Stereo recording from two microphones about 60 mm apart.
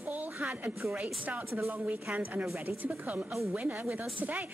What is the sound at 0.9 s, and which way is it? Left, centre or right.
Speech, right.